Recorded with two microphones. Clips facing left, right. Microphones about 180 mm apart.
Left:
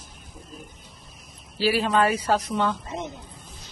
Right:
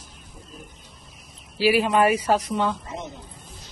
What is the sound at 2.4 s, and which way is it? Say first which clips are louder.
Speech: right 1 dB; centre (ahead or behind).